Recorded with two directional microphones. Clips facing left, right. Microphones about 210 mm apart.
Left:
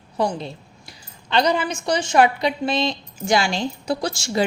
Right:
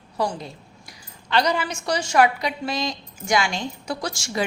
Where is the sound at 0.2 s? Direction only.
25° left (ahead or behind).